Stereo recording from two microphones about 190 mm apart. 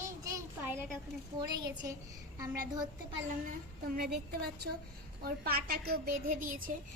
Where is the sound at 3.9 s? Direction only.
55° right (ahead or behind).